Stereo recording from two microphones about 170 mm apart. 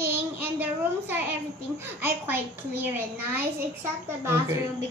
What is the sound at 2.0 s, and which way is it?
A man's voice, 10° right (ahead or behind).